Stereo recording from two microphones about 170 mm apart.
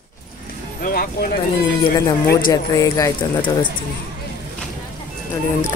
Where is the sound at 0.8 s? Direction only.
60° left (ahead or behind).